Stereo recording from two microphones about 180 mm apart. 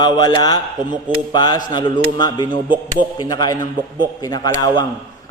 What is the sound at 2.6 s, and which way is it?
Speech, 10° right (ahead or behind).